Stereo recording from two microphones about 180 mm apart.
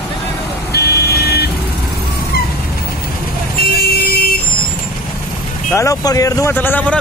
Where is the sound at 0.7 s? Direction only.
60° left (ahead or behind).